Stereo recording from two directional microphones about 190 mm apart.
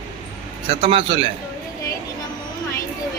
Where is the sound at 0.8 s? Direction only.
30° right (ahead or behind).